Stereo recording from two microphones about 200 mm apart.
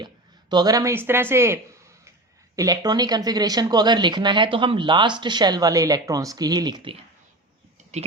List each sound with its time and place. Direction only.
0.5 s speech: 20° right (ahead or behind)
2.6 s a woman's voice: 20° right (ahead or behind)